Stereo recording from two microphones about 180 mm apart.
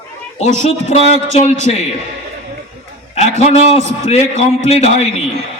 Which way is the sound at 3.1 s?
35° left (ahead or behind).